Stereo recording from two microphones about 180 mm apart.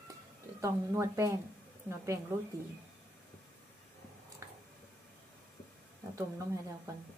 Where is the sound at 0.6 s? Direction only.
15° right (ahead or behind).